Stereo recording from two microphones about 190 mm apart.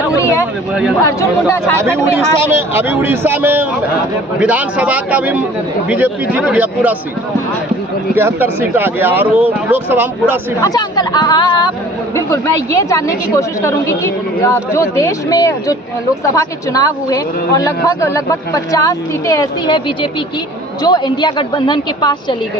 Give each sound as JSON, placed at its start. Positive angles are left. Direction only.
{"t": 0.1, "sound": "a sound", "side_deg": 15}
{"t": 1.2, "sound": "speech", "side_deg": 15}
{"t": 1.8, "sound": "speech", "side_deg": -15}
{"t": 8.1, "sound": "speech", "side_deg": -10}
{"t": 10.6, "sound": "a woman's voice", "side_deg": 20}